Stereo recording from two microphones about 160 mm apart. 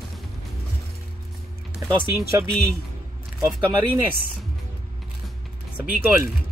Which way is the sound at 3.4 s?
20° right (ahead or behind).